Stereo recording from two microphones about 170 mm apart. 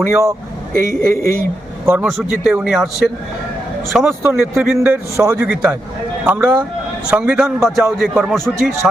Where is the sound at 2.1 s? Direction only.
Centre (ahead or behind).